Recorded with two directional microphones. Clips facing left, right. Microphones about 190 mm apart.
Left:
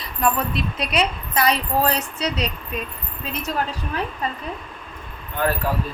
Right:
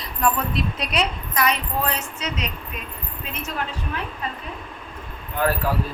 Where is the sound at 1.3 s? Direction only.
35° left (ahead or behind).